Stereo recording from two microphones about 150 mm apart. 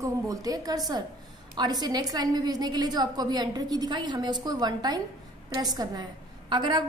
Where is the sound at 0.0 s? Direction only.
25° right (ahead or behind).